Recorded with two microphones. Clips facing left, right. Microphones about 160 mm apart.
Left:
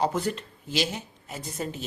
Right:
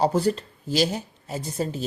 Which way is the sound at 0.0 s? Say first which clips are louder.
Right 5 dB; 35° right (ahead or behind).